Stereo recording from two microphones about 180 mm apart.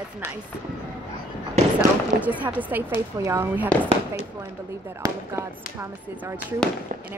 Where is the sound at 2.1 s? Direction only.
10° right (ahead or behind).